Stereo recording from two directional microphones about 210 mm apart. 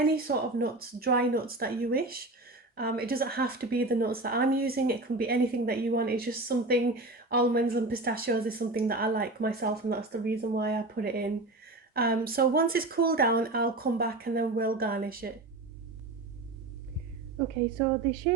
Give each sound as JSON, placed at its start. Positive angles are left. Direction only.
{"t": 0.0, "sound": "a woman's voice", "side_deg": -45}